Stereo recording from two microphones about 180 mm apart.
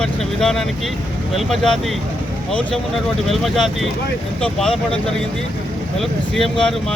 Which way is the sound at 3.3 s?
Centre (ahead or behind).